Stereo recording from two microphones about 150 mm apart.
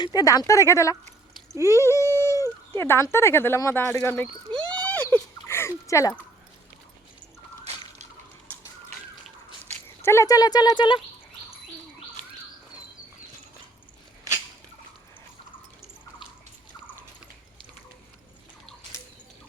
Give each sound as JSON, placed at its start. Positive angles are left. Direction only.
{"t": 0.0, "sound": "speech", "side_deg": 25}
{"t": 1.7, "sound": "a sound", "side_deg": 20}
{"t": 10.0, "sound": "speech", "side_deg": 15}